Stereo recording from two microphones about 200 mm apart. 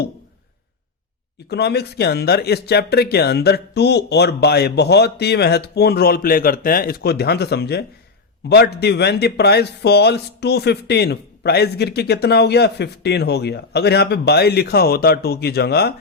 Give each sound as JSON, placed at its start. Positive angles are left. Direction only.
{"t": 1.5, "sound": "speech", "side_deg": 55}